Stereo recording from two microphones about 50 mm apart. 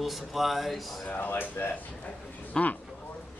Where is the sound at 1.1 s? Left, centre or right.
Left.